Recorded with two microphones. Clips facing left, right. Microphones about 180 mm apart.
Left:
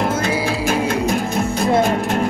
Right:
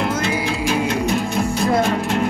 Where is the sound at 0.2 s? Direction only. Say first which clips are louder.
Left 2 dB; 40° left (ahead or behind).